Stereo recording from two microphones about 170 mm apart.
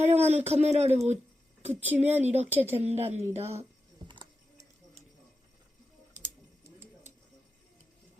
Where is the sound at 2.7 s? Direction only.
40° right (ahead or behind).